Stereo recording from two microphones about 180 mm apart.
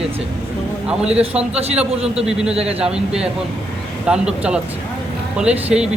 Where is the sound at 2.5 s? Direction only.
35° right (ahead or behind).